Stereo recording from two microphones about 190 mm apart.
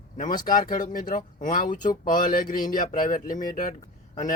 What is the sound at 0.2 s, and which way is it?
Speech, 45° left (ahead or behind).